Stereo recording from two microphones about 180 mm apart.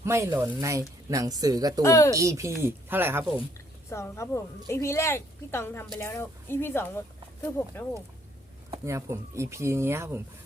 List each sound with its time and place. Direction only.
0.0 s speech: 15° right (ahead or behind)
1.8 s a woman's voice: 15° left (ahead or behind)
2.1 s speech: 15° right (ahead or behind)
3.8 s a woman's voice: 15° left (ahead or behind)
8.7 s speech: 15° right (ahead or behind)